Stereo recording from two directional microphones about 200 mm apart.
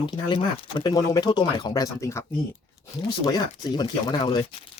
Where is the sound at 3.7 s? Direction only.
20° left (ahead or behind).